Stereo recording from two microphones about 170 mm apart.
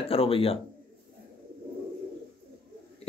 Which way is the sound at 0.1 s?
35° left (ahead or behind).